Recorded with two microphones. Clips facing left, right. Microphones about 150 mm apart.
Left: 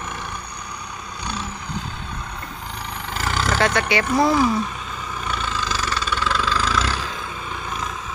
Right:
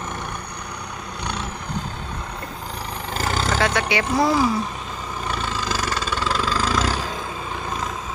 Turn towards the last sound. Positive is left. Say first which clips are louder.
# right 1 dB
turn(degrees=-40)  # may be behind; listen again after turning